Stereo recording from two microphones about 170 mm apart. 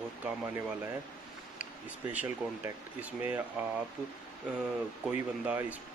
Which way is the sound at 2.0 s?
10° right (ahead or behind).